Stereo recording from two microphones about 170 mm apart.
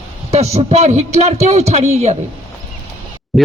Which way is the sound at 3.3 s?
Centre (ahead or behind).